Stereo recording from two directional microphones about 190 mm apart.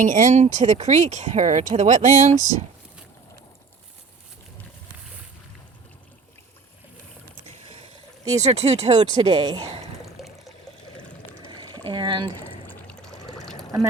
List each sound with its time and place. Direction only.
0.0 s speech: 40° right (ahead or behind)
2.3 s speech: 20° left (ahead or behind)
8.4 s speech: 35° right (ahead or behind)
8.9 s speech: 25° right (ahead or behind)
10.1 s water: centre (ahead or behind)
11.4 s a sound: 25° right (ahead or behind)
12.6 s boat: 5° left (ahead or behind)